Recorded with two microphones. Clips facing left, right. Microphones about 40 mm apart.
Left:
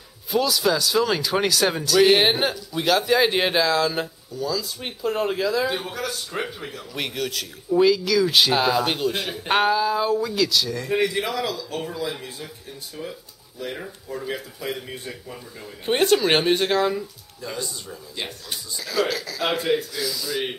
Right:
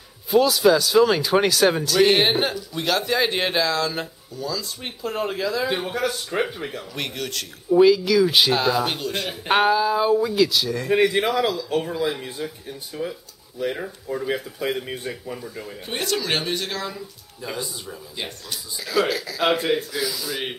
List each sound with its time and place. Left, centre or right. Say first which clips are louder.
0.3 s speech: right 5 dB; centre
5.7 s speech: right 3 dB; centre
7.0 s speech: left 3 dB; centre
8.5 s speech: even; centre
15.8 s speech: left 8 dB; left
17.4 s speech: right 1 dB; centre